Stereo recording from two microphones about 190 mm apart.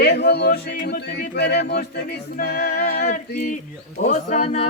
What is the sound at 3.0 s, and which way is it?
Speech, 40° left (ahead or behind).